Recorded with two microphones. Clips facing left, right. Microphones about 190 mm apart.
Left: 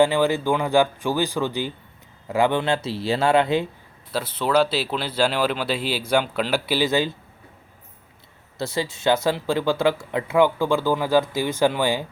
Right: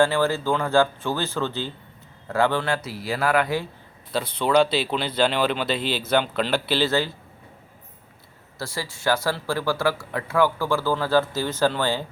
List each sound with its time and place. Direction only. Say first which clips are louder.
0.0 s speech: left 2 dB; 15° left (ahead or behind)
4.1 s speech: right 1 dB; 5° left (ahead or behind)
8.5 s speech: left 6 dB; 20° left (ahead or behind)